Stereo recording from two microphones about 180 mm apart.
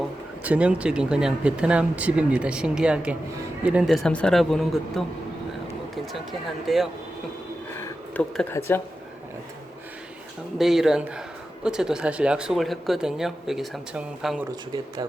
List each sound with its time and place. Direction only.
0.4 s speech: 5° right (ahead or behind)
6.7 s speech: centre (ahead or behind)
8.1 s speech: 10° left (ahead or behind)
10.6 s speech: centre (ahead or behind)
14.5 s speech: 20° right (ahead or behind)